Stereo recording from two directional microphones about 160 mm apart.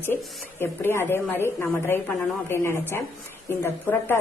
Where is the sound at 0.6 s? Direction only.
15° left (ahead or behind).